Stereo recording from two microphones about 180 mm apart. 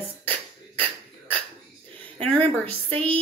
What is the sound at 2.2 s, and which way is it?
A woman's voice, 10° left (ahead or behind).